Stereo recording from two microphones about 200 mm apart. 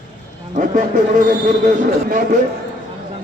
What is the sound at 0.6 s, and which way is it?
A man's voice, 40° right (ahead or behind).